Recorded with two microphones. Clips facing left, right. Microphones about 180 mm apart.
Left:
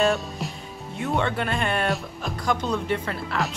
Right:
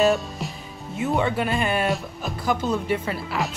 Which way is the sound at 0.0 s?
Centre (ahead or behind).